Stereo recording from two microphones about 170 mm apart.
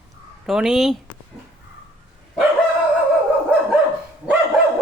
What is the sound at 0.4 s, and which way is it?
Speech, 5° right (ahead or behind).